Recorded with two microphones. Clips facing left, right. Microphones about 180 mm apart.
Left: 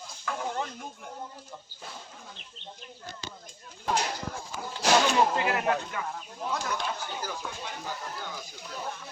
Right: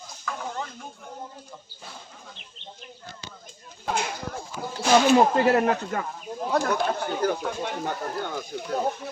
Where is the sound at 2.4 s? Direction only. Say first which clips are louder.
Right 1 dB; 40° left (ahead or behind).